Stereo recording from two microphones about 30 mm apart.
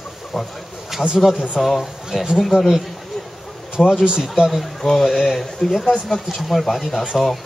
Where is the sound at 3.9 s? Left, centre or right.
Right.